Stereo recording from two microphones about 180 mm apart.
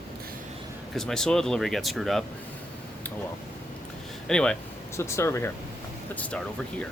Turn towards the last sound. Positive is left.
turn(degrees=10)  # may be behind; listen again after turning